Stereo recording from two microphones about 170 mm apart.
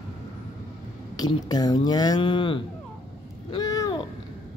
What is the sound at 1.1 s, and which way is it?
Speech, 25° left (ahead or behind).